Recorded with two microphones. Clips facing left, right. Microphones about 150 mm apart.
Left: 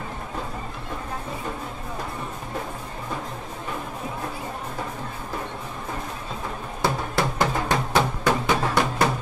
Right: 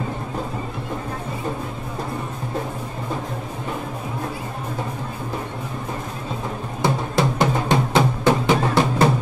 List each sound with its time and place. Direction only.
6.8 s music: 20° right (ahead or behind)